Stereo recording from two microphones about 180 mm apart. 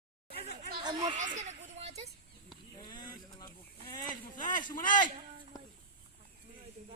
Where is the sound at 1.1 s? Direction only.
45° right (ahead or behind).